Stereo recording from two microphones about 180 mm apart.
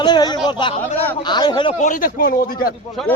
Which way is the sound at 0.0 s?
25° left (ahead or behind).